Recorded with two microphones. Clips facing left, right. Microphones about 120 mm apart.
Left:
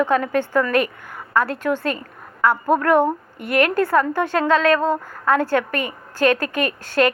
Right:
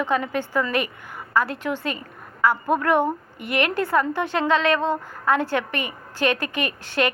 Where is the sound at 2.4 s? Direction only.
45° left (ahead or behind).